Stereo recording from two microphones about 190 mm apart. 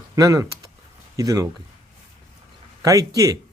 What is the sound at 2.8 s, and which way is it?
Speech, 20° right (ahead or behind).